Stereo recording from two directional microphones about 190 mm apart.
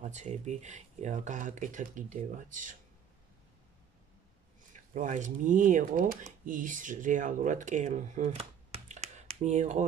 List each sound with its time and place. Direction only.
0.0 s speech: 40° right (ahead or behind)
4.7 s speech: 40° right (ahead or behind)